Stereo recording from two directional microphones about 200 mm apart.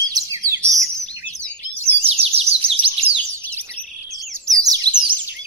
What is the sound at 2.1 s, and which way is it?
Chirp, 30° right (ahead or behind).